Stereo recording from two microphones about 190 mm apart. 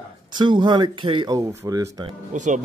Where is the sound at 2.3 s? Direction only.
40° right (ahead or behind).